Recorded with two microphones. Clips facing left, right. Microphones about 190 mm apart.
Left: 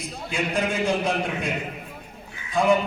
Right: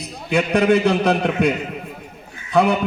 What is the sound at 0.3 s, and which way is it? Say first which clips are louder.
A man's voice: right 10 dB; 65° right (ahead or behind).